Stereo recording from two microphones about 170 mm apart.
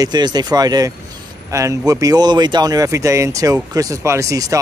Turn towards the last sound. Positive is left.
turn(degrees=-20)  # may be behind; listen again after turning